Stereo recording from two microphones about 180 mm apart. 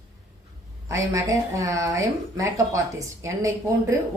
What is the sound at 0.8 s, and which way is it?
Speech, 15° right (ahead or behind).